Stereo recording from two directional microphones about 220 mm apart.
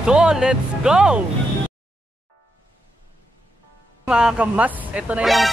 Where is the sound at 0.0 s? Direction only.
5° right (ahead or behind).